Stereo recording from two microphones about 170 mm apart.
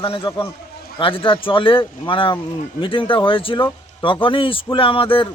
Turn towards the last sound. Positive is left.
turn(degrees=30)  # may be behind; listen again after turning